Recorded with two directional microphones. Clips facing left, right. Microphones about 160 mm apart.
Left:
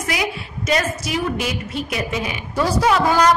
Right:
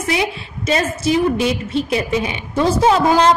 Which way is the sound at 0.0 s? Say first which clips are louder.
Right 4 dB; 25° right (ahead or behind).